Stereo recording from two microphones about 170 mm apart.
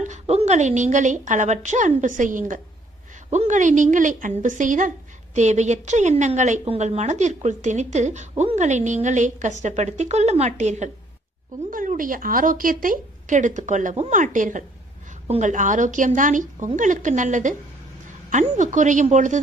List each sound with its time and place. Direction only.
0.0 s a woman's voice: 40° right (ahead or behind)